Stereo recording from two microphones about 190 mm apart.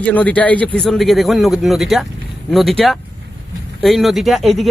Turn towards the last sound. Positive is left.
turn(degrees=0)  # may be behind; listen again after turning